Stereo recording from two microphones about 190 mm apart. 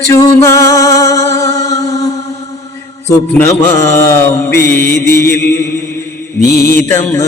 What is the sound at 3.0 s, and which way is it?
Mantra, 10° left (ahead or behind).